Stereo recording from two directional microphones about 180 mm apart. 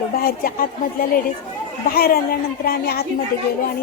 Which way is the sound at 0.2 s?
55° left (ahead or behind).